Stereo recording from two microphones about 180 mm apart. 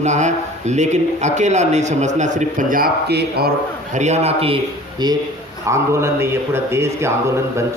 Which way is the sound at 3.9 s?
40° right (ahead or behind).